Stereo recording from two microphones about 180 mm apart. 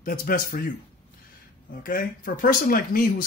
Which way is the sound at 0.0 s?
50° left (ahead or behind).